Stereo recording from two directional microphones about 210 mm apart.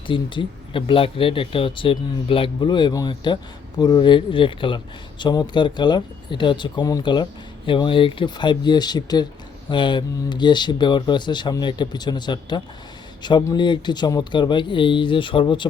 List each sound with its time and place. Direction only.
0.1 s speech: 25° left (ahead or behind)